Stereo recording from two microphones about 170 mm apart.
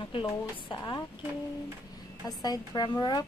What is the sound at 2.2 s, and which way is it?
A woman's voice, 20° left (ahead or behind).